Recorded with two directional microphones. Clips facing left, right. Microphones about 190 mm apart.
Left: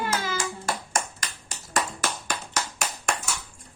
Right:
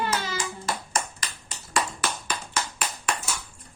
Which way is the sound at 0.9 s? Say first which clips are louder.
Left 1 dB; 45° left (ahead or behind).